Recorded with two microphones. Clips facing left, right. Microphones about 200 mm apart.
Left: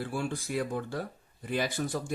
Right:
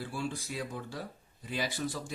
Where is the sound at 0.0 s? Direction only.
55° left (ahead or behind).